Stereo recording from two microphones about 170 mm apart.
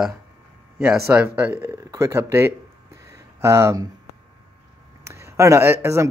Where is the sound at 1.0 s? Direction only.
10° right (ahead or behind).